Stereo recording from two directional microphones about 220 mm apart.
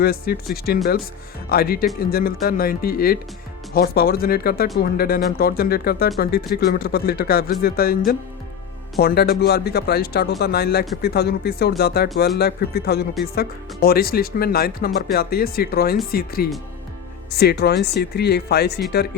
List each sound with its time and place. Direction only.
0.0 s speech: 45° left (ahead or behind)